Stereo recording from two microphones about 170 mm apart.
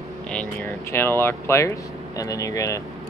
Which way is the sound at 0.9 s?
15° left (ahead or behind).